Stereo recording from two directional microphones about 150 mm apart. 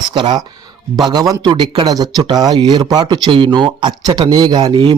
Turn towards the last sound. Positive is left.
turn(degrees=-30)  # may be behind; listen again after turning